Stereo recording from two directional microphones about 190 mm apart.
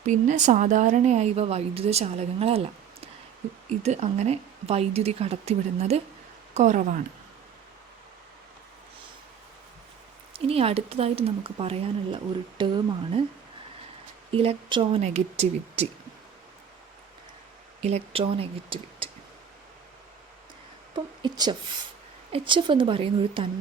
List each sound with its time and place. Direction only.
0.0 s speech: 40° right (ahead or behind)
3.7 s speech: 35° right (ahead or behind)
10.3 s speech: 30° right (ahead or behind)
14.3 s speech: 30° right (ahead or behind)
17.7 s speech: 35° right (ahead or behind)
20.9 s a sound: 25° right (ahead or behind)
22.3 s a woman's voice: 25° right (ahead or behind)